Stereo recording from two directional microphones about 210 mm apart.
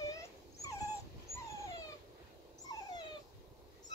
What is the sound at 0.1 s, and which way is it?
Dog, 15° left (ahead or behind).